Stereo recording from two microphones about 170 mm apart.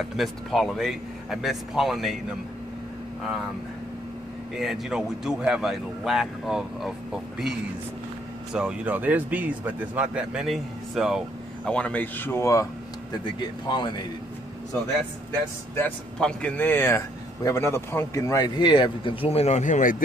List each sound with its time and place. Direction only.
0.1 s speech: centre (ahead or behind)
4.6 s speech: centre (ahead or behind)
8.5 s speech: 5° right (ahead or behind); by 12.6 s 15° left (ahead or behind)
13.7 s a man's voice: 25° left (ahead or behind)
15.7 s speech: 10° left (ahead or behind); by 20.0 s 50° left (ahead or behind)